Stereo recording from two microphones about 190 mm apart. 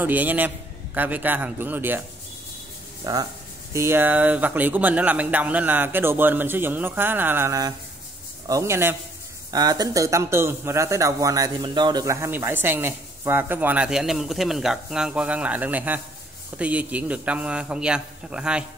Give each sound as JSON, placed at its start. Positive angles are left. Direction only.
{"t": 0.0, "sound": "speech", "side_deg": -10}
{"t": 3.0, "sound": "speech", "side_deg": -20}